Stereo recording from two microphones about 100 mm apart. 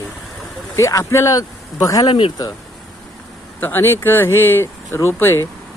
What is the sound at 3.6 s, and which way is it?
Speech, 20° left (ahead or behind).